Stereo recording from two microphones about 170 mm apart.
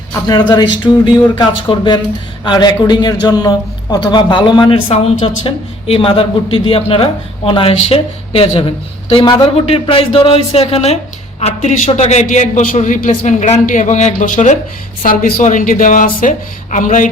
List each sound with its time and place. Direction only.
0.1 s a man's voice: 25° left (ahead or behind); by 14.6 s 45° left (ahead or behind)
15.0 s a woman's voice: 55° left (ahead or behind)